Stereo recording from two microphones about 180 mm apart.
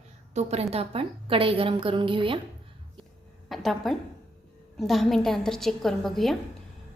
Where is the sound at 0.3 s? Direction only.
35° right (ahead or behind).